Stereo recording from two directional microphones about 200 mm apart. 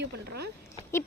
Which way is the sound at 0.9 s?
15° left (ahead or behind).